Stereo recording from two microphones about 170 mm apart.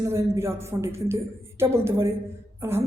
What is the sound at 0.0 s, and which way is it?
Speech, 15° right (ahead or behind).